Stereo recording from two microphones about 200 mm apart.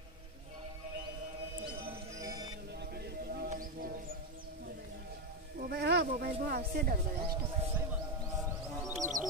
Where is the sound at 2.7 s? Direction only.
55° right (ahead or behind).